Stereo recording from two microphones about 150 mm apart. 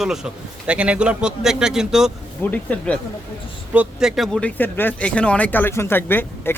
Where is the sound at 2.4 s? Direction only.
10° left (ahead or behind).